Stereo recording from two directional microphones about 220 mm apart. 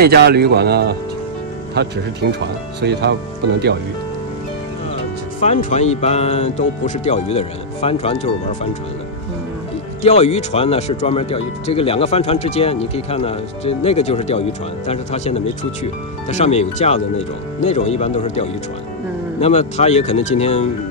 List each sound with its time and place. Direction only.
0.0 s speech: 45° right (ahead or behind)
5.4 s speech: 30° left (ahead or behind)
10.0 s speech: 30° left (ahead or behind)